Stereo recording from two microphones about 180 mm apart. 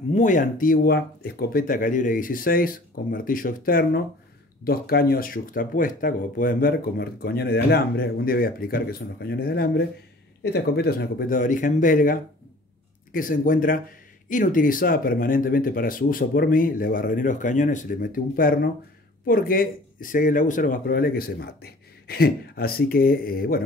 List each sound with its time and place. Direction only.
0.1 s speech: 45° left (ahead or behind)